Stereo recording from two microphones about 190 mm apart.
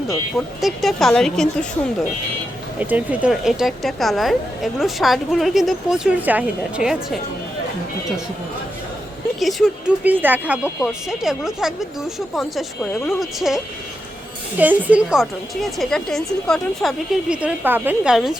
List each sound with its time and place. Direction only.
0.3 s speech: centre (ahead or behind)
2.7 s speech: 10° right (ahead or behind)
9.4 s speech: centre (ahead or behind)
14.6 s speech: 10° right (ahead or behind)